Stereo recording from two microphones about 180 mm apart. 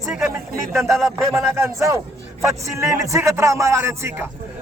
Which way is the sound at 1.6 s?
15° right (ahead or behind).